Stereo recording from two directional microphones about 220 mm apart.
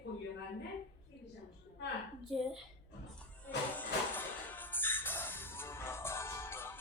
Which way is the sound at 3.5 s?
10° left (ahead or behind).